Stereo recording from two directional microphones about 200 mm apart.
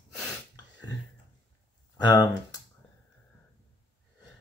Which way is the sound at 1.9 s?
20° left (ahead or behind).